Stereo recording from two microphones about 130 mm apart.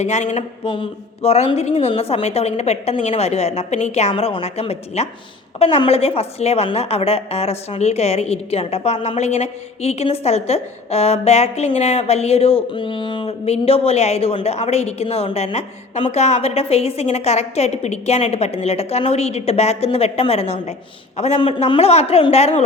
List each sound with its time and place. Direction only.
0.0 s speech: 60° left (ahead or behind)
0.7 s a woman's voice: 45° left (ahead or behind)
4.1 s a woman's voice: 50° left (ahead or behind)